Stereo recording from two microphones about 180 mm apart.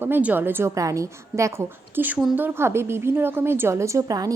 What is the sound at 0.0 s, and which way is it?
A woman's voice, 10° right (ahead or behind).